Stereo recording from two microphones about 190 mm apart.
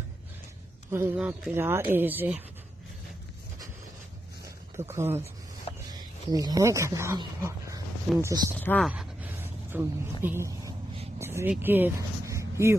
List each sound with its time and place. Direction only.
0.9 s speech: 10° right (ahead or behind)
4.7 s speech: 10° right (ahead or behind)
8.5 s speech: 5° left (ahead or behind)
8.9 s a sound: 10° right (ahead or behind)
10.2 s speech: 15° right (ahead or behind)
11.1 s a sound: 15° right (ahead or behind)